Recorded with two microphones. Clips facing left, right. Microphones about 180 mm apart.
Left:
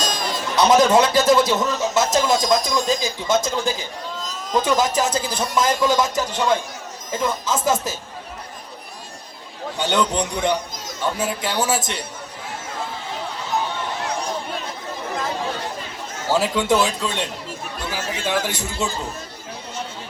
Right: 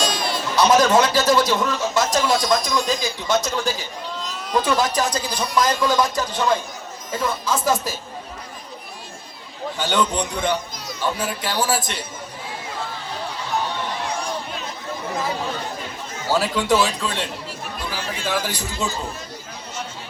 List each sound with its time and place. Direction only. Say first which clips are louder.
0.0 s music: right 2 dB; 45° left (ahead or behind)
0.6 s speech: left 1 dB; 20° left (ahead or behind)
9.7 s speech: left 1 dB; 20° left (ahead or behind)
16.3 s speech: left 1 dB; 20° left (ahead or behind)
18.3 s speech: left 1 dB; 20° left (ahead or behind)